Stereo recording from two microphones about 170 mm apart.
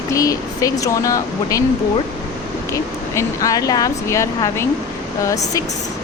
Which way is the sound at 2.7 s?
20° left (ahead or behind).